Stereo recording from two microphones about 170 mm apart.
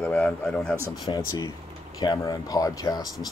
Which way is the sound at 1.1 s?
30° left (ahead or behind).